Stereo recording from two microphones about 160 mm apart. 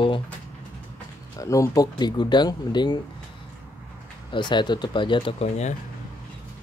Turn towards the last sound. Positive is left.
turn(degrees=45)  # may be behind; listen again after turning